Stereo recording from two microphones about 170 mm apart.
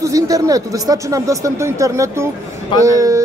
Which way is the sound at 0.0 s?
20° right (ahead or behind).